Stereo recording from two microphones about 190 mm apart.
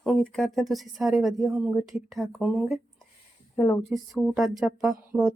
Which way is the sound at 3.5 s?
15° left (ahead or behind).